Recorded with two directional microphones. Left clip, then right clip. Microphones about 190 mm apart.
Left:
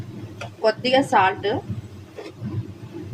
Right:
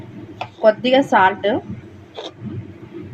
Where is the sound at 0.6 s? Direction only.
30° right (ahead or behind).